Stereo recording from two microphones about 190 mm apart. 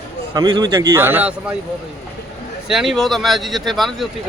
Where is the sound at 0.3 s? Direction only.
20° right (ahead or behind).